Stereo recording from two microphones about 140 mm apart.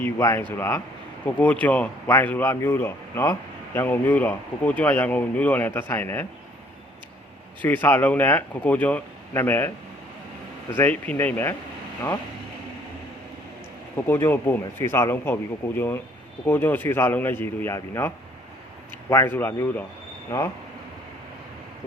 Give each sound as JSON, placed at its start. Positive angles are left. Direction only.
{"t": 0.0, "sound": "speech", "side_deg": 20}
{"t": 7.6, "sound": "speech", "side_deg": 15}
{"t": 10.8, "sound": "speech", "side_deg": 10}
{"t": 13.9, "sound": "speech", "side_deg": 15}
{"t": 19.1, "sound": "speech", "side_deg": 15}